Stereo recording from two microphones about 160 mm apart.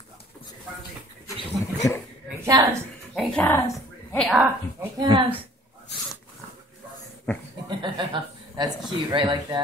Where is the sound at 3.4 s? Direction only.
15° left (ahead or behind).